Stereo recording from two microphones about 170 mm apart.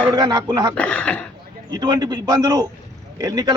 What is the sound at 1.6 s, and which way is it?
A man's voice, 25° right (ahead or behind).